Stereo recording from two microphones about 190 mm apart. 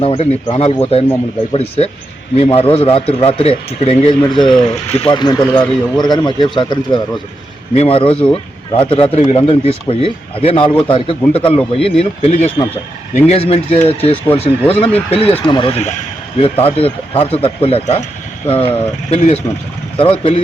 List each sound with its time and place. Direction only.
0.0 s speech: 30° left (ahead or behind)
4.4 s speech: centre (ahead or behind)
4.7 s speech: 30° left (ahead or behind)
19.1 s speech: 35° left (ahead or behind)